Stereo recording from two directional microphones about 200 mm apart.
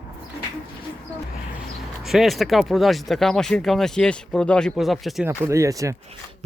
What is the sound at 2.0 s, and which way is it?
Speech, centre (ahead or behind).